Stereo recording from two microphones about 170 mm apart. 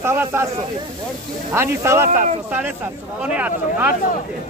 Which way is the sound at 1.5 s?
15° right (ahead or behind).